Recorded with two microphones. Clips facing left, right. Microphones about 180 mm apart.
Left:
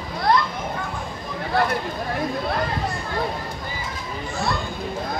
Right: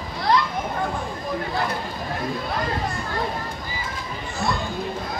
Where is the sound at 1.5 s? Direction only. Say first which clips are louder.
Left 7 dB; 65° left (ahead or behind).